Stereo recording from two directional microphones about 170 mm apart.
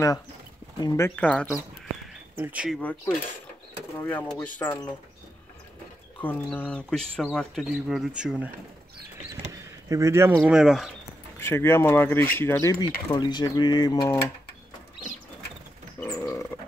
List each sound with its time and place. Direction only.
0.7 s speech: 20° left (ahead or behind)
2.3 s speech: 10° right (ahead or behind)
2.8 s speech: 10° left (ahead or behind)
6.2 s speech: 10° left (ahead or behind)
9.5 s a sound: 20° right (ahead or behind)
10.5 s speech: 5° right (ahead or behind)
11.3 s speech: 15° left (ahead or behind)
16.0 s a sound: 15° left (ahead or behind)